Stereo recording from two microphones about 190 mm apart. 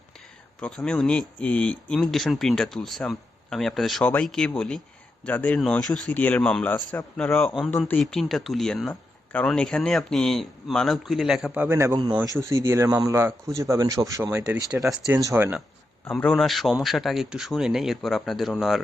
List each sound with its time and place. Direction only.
0.6 s speech: 5° left (ahead or behind); by 15.6 s 10° right (ahead or behind)
16.1 s speech: centre (ahead or behind)